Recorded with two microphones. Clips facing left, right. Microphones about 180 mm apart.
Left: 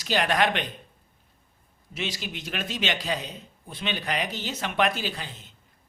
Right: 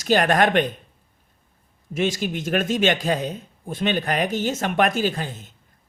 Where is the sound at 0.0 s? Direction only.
50° right (ahead or behind).